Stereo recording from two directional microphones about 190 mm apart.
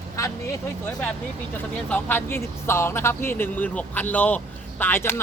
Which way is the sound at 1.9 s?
10° left (ahead or behind).